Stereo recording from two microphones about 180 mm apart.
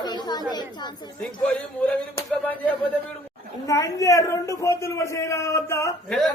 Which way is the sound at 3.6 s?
20° left (ahead or behind).